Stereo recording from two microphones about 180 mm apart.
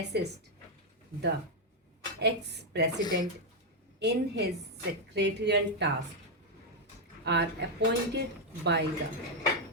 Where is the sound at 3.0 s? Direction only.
20° left (ahead or behind).